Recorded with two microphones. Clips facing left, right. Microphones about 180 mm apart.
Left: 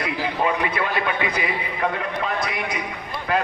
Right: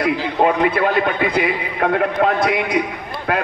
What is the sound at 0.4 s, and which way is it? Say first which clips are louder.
A man's voice: right 8 dB; 55° right (ahead or behind).